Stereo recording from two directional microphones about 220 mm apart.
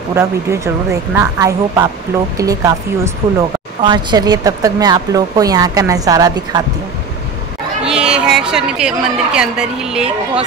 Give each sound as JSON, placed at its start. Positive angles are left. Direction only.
{"t": 0.1, "sound": "speech", "side_deg": -10}
{"t": 7.8, "sound": "a woman's voice", "side_deg": -5}